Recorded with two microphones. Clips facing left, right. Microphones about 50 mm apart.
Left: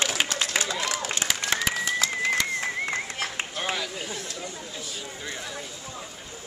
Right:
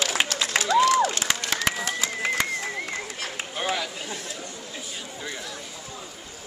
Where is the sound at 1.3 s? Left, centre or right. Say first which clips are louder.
Right 2 dB; centre.